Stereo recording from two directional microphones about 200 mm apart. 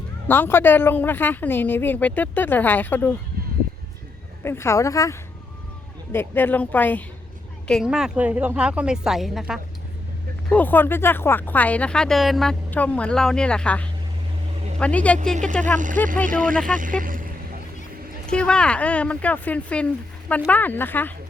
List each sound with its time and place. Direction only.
0.3 s speech: 10° left (ahead or behind)
4.4 s a woman's voice: 15° left (ahead or behind)
10.5 s a woman's voice: 10° left (ahead or behind)
16.2 s speech: 45° right (ahead or behind)
17.0 s vehicle: 45° right (ahead or behind)
18.3 s speech: 5° left (ahead or behind)